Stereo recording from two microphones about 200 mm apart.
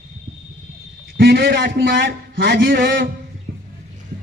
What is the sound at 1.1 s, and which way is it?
A man's voice, 50° right (ahead or behind).